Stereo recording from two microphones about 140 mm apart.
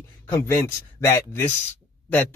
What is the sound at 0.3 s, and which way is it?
Speech, 15° left (ahead or behind).